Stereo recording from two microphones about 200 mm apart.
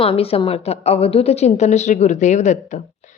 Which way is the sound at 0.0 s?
30° left (ahead or behind).